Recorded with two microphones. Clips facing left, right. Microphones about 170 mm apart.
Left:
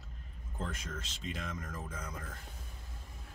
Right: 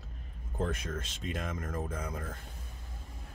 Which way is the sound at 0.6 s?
60° right (ahead or behind).